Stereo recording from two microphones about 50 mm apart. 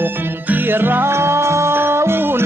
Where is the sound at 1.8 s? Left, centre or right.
Right.